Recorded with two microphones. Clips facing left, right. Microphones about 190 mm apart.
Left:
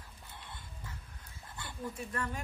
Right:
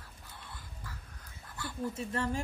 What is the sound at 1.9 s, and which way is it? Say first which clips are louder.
Speech: right 4 dB; 25° right (ahead or behind).